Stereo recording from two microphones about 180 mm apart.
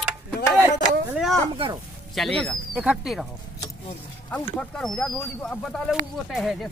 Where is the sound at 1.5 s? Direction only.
30° right (ahead or behind).